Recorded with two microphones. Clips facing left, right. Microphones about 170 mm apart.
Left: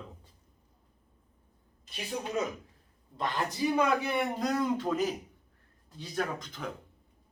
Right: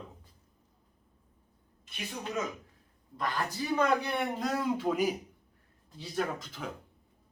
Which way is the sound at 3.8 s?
5° left (ahead or behind).